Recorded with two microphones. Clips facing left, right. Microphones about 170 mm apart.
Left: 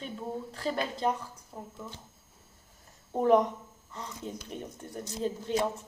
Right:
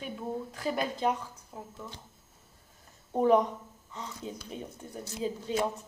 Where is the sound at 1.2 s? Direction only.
10° left (ahead or behind).